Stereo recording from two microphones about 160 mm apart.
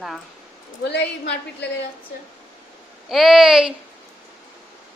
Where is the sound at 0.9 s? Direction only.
90° left.